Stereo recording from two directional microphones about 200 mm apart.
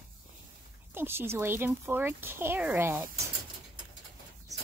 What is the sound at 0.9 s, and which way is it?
Speech, 10° right (ahead or behind).